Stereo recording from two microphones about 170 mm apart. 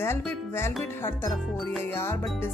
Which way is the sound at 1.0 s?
15° left (ahead or behind).